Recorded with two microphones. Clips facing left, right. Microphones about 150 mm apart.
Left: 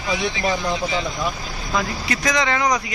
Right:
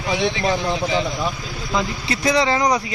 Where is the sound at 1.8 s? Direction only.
30° right (ahead or behind).